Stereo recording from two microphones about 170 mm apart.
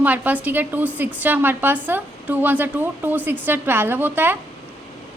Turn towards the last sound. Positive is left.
turn(degrees=-15)  # may be behind; listen again after turning